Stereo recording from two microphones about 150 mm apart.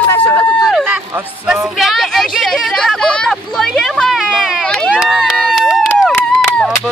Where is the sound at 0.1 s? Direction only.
10° left (ahead or behind).